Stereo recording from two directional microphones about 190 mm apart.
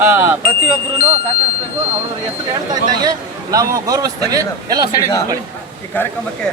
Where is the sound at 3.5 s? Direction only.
15° right (ahead or behind).